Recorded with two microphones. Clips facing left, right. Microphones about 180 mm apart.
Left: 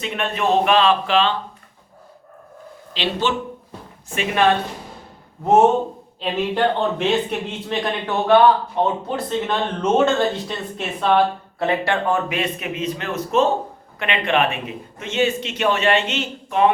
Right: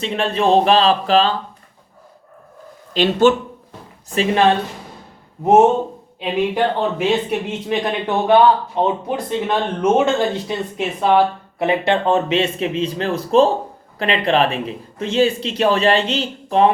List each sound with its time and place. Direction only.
0.0 s speech: 30° right (ahead or behind)
2.9 s speech: 45° right (ahead or behind)
4.1 s speech: 35° right (ahead or behind)
6.1 s speech: 10° right (ahead or behind); by 16.7 s 35° right (ahead or behind)